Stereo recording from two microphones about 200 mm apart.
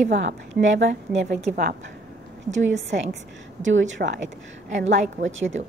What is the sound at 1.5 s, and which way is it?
Speech, 45° right (ahead or behind).